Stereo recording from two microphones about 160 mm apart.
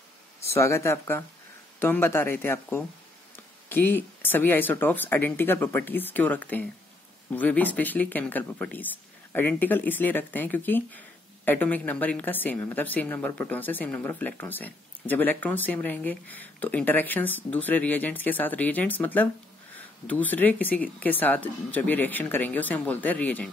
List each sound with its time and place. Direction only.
0.4 s speech: 15° left (ahead or behind)